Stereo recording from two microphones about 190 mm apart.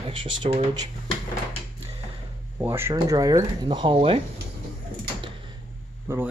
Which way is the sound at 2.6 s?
10° right (ahead or behind).